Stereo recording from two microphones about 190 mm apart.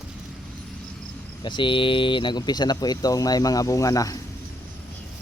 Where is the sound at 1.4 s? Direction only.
25° left (ahead or behind).